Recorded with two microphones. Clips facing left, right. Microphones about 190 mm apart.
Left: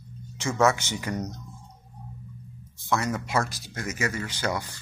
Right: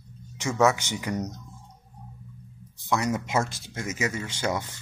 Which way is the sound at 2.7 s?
20° right (ahead or behind).